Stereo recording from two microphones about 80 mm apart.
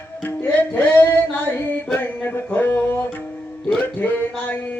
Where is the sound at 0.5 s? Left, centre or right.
Left.